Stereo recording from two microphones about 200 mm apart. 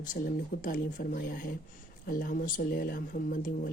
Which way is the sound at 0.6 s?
40° left (ahead or behind).